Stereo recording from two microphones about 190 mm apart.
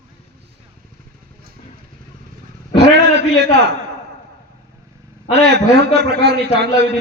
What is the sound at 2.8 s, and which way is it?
Speech, 60° right (ahead or behind).